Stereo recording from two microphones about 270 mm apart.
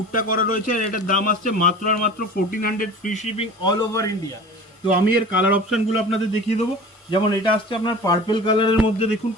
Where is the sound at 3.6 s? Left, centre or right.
Centre.